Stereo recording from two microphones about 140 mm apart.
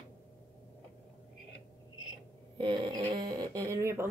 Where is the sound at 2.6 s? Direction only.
35° right (ahead or behind).